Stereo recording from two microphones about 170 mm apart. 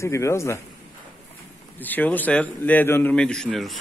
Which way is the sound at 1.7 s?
10° left (ahead or behind).